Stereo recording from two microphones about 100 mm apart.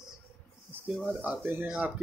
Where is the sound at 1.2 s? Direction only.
20° right (ahead or behind).